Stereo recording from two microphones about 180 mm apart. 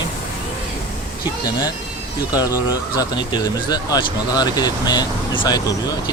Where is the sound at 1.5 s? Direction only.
20° left (ahead or behind).